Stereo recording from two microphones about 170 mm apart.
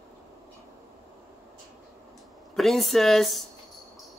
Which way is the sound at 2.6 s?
Centre (ahead or behind).